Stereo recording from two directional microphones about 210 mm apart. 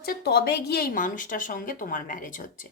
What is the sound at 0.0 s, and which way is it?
A woman's voice, 50° left (ahead or behind).